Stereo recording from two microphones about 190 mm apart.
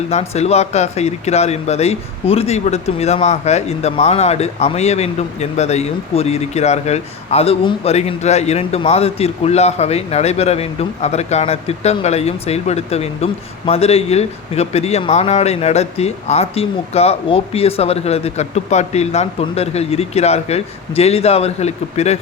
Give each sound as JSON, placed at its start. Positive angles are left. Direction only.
{"t": 0.1, "sound": "speech", "side_deg": 35}